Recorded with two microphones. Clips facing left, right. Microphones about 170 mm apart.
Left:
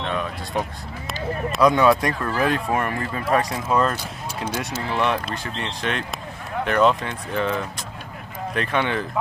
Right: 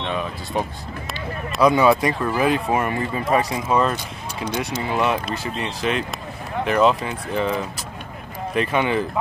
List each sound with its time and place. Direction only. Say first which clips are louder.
0.0 s vehicle: even; centre (ahead or behind)
1.5 s speech: right 1 dB; 5° right (ahead or behind)
4.8 s speech: right 1 dB; 10° right (ahead or behind)